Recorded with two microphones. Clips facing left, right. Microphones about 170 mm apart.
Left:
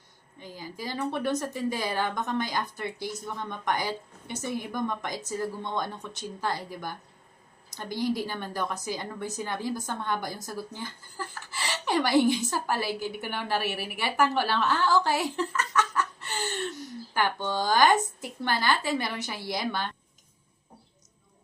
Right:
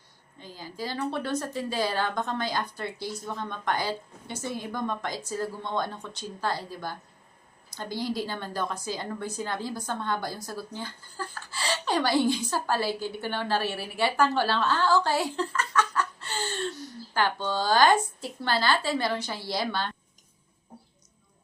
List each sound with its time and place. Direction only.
0.3 s speech: 15° left (ahead or behind)